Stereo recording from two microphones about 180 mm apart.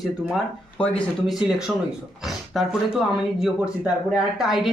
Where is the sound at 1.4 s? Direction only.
5° right (ahead or behind).